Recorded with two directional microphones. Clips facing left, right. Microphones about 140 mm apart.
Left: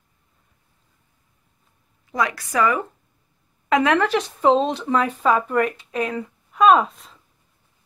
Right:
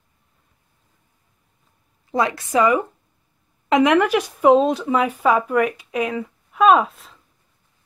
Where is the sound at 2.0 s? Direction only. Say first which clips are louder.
Right 3 dB; 30° right (ahead or behind); by 7.2 s centre (ahead or behind).